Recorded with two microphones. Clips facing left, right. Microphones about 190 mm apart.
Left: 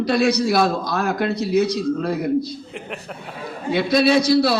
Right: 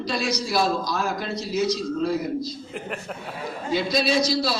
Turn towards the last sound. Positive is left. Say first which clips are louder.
# left 7 dB
turn(degrees=60)  # may be behind; listen again after turning